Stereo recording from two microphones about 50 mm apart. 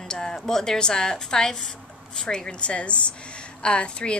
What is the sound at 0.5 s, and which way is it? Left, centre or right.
A woman's voice, centre.